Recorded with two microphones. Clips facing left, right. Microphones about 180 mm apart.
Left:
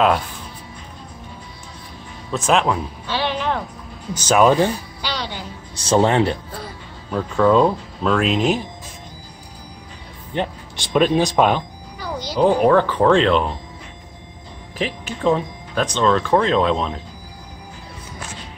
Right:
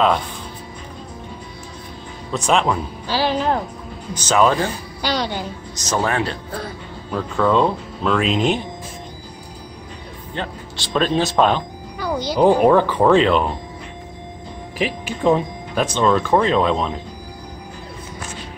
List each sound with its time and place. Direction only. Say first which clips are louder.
2.3 s speech: even; 5° left (ahead or behind)
3.1 s speech: right 3 dB; 35° right (ahead or behind)
4.1 s speech: left 2 dB; 10° left (ahead or behind)
5.0 s a sound: right 6 dB; 45° right (ahead or behind)
5.8 s a man's voice: left 5 dB; 30° left (ahead or behind)
7.1 s speech: left 2 dB; 5° left (ahead or behind)
10.3 s speech: left 4 dB; 15° left (ahead or behind)
12.4 s speech: right 1 dB; 15° right (ahead or behind)
14.8 s speech: right 2 dB; 10° right (ahead or behind)